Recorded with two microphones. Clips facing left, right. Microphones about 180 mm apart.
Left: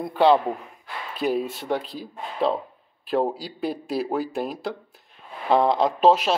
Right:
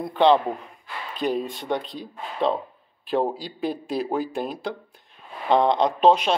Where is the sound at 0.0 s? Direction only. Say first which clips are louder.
Even; 5° left (ahead or behind).